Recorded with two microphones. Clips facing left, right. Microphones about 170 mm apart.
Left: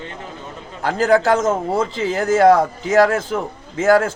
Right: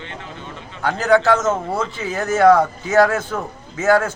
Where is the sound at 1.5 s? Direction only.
30° left (ahead or behind).